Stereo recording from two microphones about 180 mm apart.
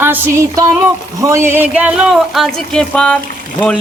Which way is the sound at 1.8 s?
5° right (ahead or behind).